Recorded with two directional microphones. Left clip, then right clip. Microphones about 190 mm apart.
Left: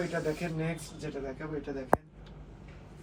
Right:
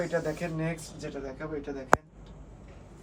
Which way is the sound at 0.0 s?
5° right (ahead or behind).